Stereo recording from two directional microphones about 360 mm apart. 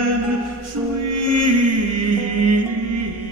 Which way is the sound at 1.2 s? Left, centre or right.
Right.